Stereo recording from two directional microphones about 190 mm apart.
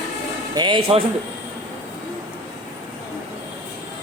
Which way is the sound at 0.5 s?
25° right (ahead or behind).